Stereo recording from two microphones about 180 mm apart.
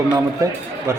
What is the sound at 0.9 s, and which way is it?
Speech, 15° right (ahead or behind).